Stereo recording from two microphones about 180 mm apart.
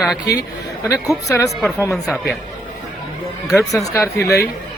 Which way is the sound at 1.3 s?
15° left (ahead or behind).